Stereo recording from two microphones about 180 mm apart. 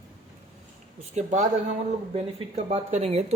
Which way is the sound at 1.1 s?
40° right (ahead or behind).